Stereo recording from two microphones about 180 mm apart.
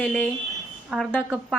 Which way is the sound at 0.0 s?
10° left (ahead or behind).